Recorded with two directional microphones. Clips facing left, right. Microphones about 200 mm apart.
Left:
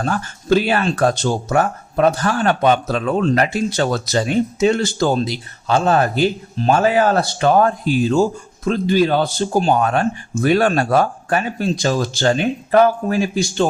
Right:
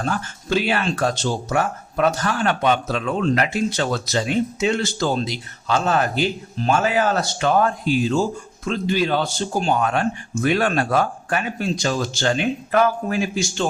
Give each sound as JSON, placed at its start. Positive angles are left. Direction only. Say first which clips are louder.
{"t": 0.0, "sound": "speech", "louder": "left 3 dB", "side_deg": 45}
{"t": 5.7, "sound": "speech", "louder": "left 4 dB", "side_deg": 35}
{"t": 7.0, "sound": "speech", "louder": "left 5 dB", "side_deg": 55}